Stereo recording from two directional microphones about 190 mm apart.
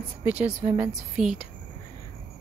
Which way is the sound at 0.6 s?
10° right (ahead or behind).